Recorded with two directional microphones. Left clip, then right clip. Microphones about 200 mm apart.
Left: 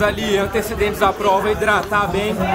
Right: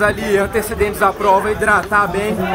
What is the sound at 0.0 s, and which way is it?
Speech, centre (ahead or behind).